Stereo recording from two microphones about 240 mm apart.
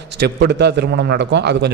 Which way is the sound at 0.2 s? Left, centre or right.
Right.